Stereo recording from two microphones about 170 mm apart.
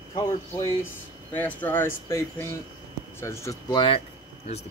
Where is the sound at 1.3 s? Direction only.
10° left (ahead or behind).